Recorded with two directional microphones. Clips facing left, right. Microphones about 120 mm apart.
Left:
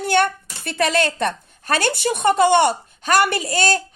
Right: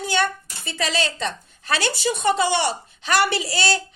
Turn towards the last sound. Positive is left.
turn(degrees=50)  # may be behind; listen again after turning